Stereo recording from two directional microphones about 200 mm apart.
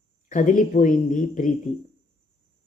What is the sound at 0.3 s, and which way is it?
Speech, 40° left (ahead or behind).